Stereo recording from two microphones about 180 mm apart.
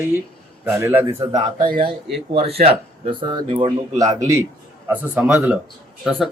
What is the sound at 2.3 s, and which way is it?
A man's voice, 35° right (ahead or behind).